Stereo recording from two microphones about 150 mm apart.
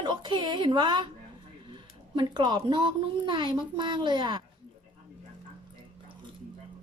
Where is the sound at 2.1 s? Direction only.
30° right (ahead or behind).